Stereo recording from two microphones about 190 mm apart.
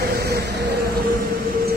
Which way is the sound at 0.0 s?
50° right (ahead or behind).